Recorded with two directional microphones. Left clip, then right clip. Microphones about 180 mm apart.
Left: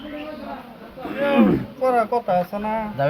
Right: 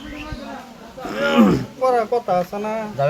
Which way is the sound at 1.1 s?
25° right (ahead or behind).